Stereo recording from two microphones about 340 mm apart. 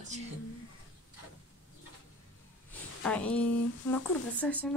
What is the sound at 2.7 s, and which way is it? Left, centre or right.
Speech, centre.